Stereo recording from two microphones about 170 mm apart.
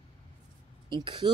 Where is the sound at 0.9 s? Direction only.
25° right (ahead or behind).